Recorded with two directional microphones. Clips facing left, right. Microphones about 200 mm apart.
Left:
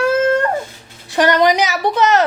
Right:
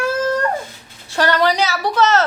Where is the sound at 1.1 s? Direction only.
15° left (ahead or behind).